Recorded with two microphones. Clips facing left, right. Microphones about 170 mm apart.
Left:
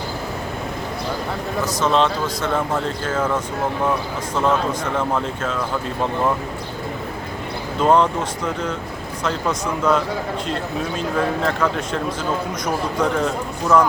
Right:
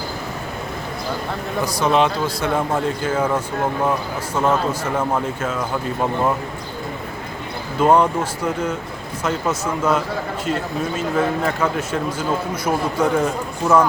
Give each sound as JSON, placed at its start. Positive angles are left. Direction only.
{"t": 1.6, "sound": "speech", "side_deg": -10}
{"t": 7.8, "sound": "speech", "side_deg": -10}